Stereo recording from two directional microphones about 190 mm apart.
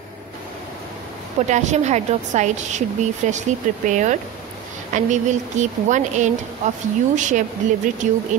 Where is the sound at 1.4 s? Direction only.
40° right (ahead or behind).